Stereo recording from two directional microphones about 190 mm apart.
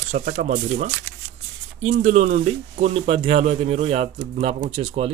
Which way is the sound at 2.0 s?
40° right (ahead or behind).